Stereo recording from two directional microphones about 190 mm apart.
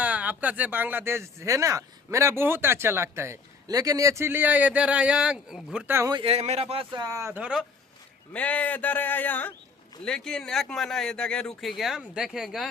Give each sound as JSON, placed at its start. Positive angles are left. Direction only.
{"t": 0.0, "sound": "speech", "side_deg": -10}
{"t": 6.1, "sound": "speech", "side_deg": -30}
{"t": 8.3, "sound": "speech", "side_deg": 10}